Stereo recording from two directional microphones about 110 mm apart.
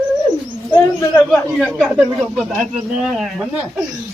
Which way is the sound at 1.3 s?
5° left (ahead or behind).